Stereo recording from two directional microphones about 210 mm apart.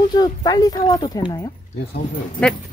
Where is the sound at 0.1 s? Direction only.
20° left (ahead or behind).